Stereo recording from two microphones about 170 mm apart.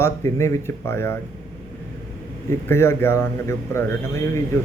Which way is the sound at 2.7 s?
15° left (ahead or behind).